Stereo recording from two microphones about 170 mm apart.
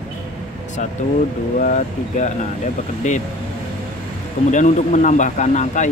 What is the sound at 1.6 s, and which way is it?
Speech, 45° left (ahead or behind).